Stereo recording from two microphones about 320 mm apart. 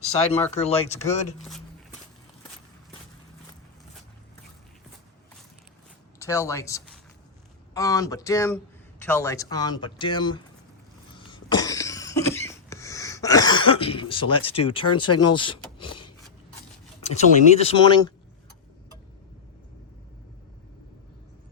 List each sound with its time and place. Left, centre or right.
0.5 s speech: centre
6.1 s a man's voice: centre
11.3 s cough: centre
14.4 s a man's voice: centre
15.0 s speech: left
15.4 s a sound: centre
17.0 s speech: centre